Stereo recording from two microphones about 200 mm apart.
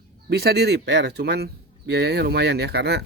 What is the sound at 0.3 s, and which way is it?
Speech, 55° right (ahead or behind).